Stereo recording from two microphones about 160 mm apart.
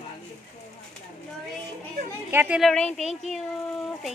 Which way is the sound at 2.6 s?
5° left (ahead or behind).